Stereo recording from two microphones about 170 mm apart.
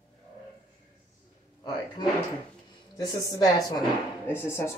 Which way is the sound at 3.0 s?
20° left (ahead or behind).